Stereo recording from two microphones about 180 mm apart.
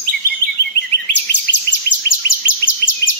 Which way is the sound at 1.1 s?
70° left (ahead or behind).